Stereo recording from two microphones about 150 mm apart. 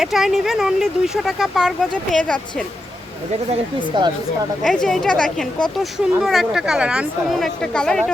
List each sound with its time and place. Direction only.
0.0 s a woman's voice: centre (ahead or behind)
3.8 s speech: 30° right (ahead or behind)
4.6 s speech: centre (ahead or behind)